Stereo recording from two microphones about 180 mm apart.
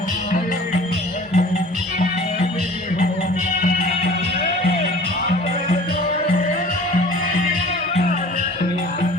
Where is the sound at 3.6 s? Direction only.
45° left (ahead or behind).